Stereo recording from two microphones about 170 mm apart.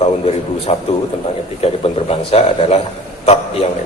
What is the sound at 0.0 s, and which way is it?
A man's voice, 35° left (ahead or behind).